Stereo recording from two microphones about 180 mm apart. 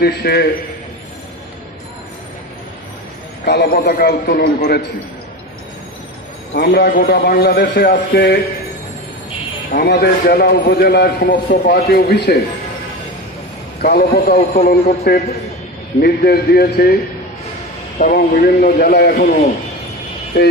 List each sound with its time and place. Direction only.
0.0 s a man's voice: 60° left (ahead or behind)
3.4 s a man's voice: 60° left (ahead or behind)
6.5 s a man's voice: 65° left (ahead or behind)
9.7 s a man's voice: 60° left (ahead or behind)
13.8 s a man's voice: 55° left (ahead or behind)
18.0 s a man's voice: 50° left (ahead or behind)
19.1 s a man's voice: 40° left (ahead or behind)